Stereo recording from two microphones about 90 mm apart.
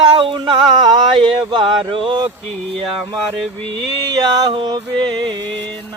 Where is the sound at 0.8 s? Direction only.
60° right (ahead or behind); by 2.3 s 80° right.